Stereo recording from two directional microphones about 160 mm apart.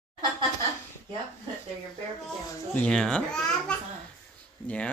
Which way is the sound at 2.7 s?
5° left (ahead or behind).